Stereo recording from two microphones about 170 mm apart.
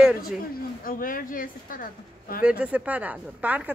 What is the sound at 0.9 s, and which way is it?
A woman's voice, 55° left (ahead or behind).